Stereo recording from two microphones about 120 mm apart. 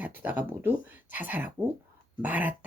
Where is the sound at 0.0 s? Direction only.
15° right (ahead or behind).